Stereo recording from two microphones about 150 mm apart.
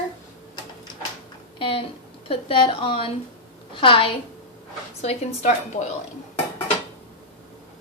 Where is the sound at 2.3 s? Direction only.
35° left (ahead or behind).